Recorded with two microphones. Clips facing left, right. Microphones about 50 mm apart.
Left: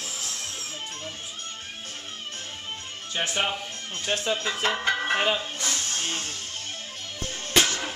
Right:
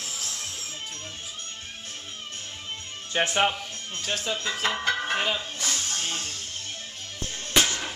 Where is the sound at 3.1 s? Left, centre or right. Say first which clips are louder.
Right 4 dB; right.